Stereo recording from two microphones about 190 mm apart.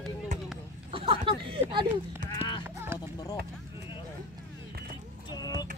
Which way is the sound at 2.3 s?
25° left (ahead or behind).